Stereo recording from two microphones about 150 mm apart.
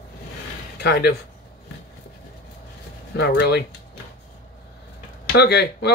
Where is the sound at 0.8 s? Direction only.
90° left.